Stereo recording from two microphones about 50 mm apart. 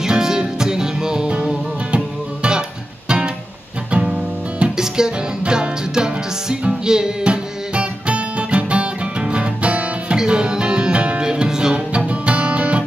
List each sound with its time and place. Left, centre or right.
0.0 s music: centre
3.9 s music: right